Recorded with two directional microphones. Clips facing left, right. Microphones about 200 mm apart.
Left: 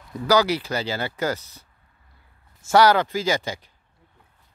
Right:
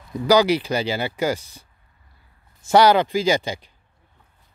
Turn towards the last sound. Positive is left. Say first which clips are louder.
# right 4 dB
turn(degrees=-15)  # may be behind; listen again after turning